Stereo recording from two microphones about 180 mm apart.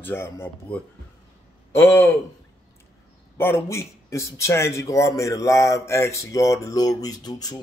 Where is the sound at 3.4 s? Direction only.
15° left (ahead or behind).